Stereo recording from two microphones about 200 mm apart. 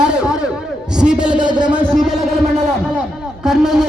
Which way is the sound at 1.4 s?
25° right (ahead or behind).